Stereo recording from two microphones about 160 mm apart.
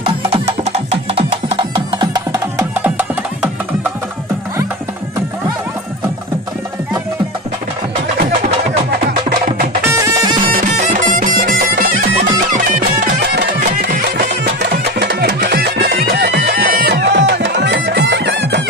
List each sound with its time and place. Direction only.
1.1 s music: 35° right (ahead or behind)
9.9 s music: 20° right (ahead or behind)
10.4 s bagpipes: 55° right (ahead or behind)
12.6 s music: 70° right (ahead or behind)
13.8 s music: 80° right